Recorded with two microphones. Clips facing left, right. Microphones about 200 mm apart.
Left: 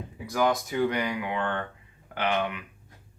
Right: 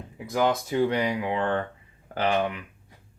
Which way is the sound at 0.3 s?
25° right (ahead or behind).